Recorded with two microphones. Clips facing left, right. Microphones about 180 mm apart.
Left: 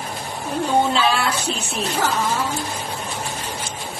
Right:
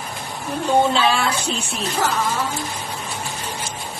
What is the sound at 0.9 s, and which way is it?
Speech, centre (ahead or behind).